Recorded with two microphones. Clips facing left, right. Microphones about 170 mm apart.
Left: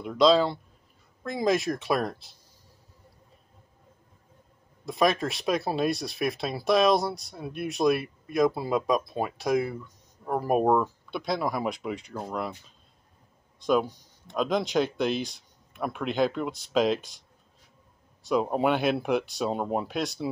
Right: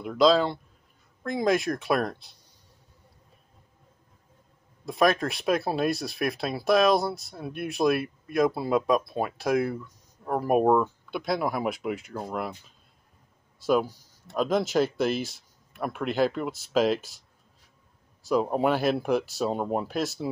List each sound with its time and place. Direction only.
0.0 s speech: centre (ahead or behind)
4.8 s speech: centre (ahead or behind)
13.6 s speech: 5° right (ahead or behind)
18.2 s speech: centre (ahead or behind)